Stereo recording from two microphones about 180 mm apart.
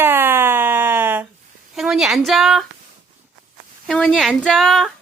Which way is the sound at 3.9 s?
5° left (ahead or behind).